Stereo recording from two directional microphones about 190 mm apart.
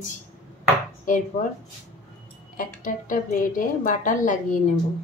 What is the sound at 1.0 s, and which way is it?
Speech, 45° left (ahead or behind).